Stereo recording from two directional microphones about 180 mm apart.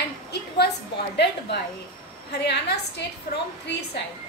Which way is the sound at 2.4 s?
70° left (ahead or behind).